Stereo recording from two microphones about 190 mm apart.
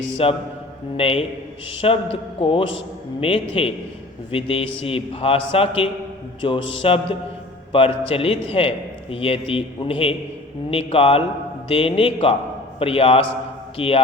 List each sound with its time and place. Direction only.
0.2 s a man's voice: 30° left (ahead or behind)